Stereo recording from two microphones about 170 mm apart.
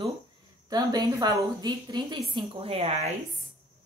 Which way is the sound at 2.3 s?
35° right (ahead or behind).